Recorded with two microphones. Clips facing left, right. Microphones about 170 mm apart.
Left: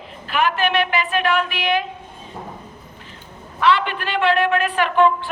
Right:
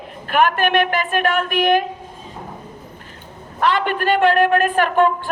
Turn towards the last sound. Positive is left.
turn(degrees=-45)  # may be behind; listen again after turning